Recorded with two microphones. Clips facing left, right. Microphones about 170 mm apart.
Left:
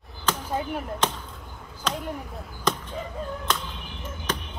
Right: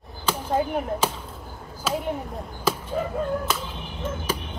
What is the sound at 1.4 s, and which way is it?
Chop, 35° right (ahead or behind).